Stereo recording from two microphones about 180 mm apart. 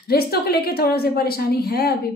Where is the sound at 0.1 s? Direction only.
60° left (ahead or behind).